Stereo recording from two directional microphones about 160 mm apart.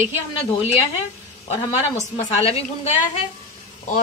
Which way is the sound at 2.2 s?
40° left (ahead or behind).